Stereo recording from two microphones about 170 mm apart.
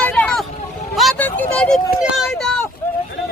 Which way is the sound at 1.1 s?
10° left (ahead or behind).